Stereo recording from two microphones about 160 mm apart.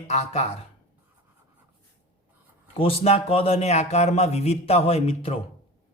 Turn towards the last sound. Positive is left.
turn(degrees=35)  # may be behind; listen again after turning